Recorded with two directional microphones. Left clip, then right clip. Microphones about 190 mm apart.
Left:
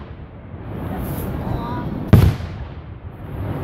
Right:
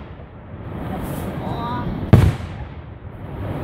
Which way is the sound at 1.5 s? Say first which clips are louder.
Right 3 dB; 45° right (ahead or behind).